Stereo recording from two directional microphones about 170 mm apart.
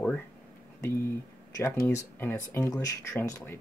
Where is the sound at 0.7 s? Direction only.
15° left (ahead or behind).